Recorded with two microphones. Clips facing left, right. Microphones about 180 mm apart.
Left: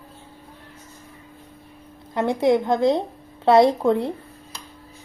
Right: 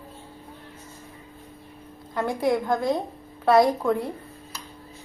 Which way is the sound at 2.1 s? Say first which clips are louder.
Left 5 dB; 20° left (ahead or behind).